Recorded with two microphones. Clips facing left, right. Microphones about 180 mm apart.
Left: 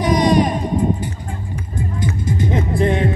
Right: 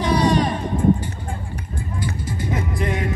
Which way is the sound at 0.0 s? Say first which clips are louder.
Left 3 dB; 15° left (ahead or behind).